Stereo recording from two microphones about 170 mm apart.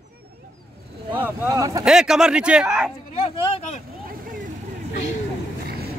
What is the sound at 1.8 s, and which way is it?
Speech, 5° right (ahead or behind).